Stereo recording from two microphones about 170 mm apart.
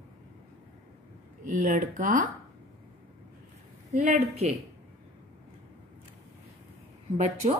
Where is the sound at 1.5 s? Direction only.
50° right (ahead or behind).